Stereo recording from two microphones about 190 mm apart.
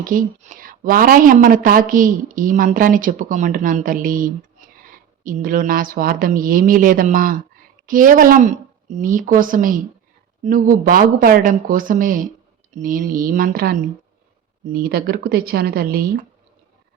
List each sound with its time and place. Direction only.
0.0 s a woman's voice: 45° right (ahead or behind)